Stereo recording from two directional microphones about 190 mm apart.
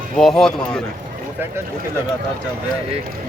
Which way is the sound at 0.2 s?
Centre (ahead or behind).